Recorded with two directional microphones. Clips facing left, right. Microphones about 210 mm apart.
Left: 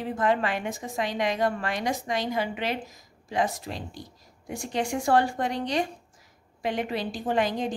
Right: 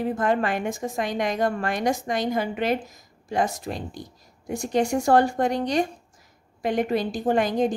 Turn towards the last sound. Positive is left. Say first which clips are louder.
# right 5 dB
turn(degrees=-45)  # may be behind; listen again after turning